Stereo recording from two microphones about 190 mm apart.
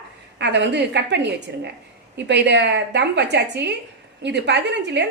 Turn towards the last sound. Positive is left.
turn(degrees=-65)  # may be behind; listen again after turning